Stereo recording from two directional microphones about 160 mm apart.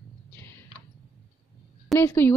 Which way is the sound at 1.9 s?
15° left (ahead or behind).